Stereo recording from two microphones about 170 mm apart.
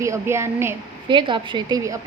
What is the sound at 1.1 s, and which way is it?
Speech, 30° right (ahead or behind).